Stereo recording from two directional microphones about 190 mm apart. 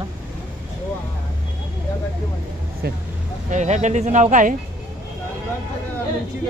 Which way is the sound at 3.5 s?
40° right (ahead or behind).